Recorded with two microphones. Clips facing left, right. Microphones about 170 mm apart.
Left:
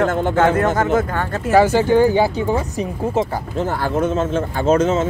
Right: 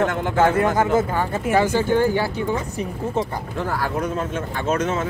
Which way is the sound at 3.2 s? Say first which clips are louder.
Left 4 dB; 25° left (ahead or behind).